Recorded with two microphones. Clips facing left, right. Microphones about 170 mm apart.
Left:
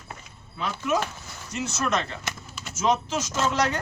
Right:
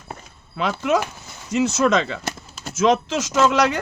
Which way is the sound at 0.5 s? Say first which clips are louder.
Right 6 dB; 90° right.